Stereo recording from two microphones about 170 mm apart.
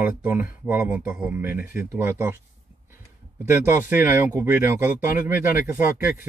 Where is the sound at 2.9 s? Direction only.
15° right (ahead or behind).